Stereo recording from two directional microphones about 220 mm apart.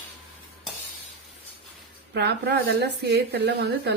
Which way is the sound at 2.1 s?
50° right (ahead or behind).